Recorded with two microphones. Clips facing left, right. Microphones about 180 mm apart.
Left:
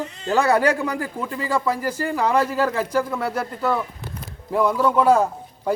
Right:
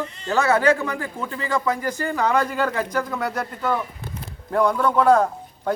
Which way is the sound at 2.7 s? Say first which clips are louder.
Left 2 dB; 30° left (ahead or behind).